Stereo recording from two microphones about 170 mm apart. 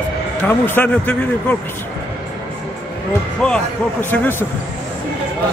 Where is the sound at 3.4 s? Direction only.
10° left (ahead or behind).